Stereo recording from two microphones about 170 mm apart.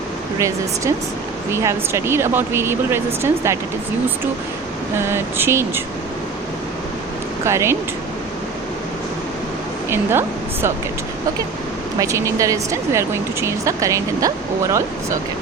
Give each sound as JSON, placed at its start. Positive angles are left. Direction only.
{"t": 0.3, "sound": "speech", "side_deg": -20}
{"t": 4.9, "sound": "speech", "side_deg": -15}
{"t": 7.4, "sound": "speech", "side_deg": -15}
{"t": 9.9, "sound": "speech", "side_deg": -15}
{"t": 11.9, "sound": "speech", "side_deg": -15}